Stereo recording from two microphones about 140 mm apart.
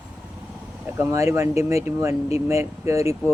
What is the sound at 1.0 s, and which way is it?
Speech, 20° right (ahead or behind).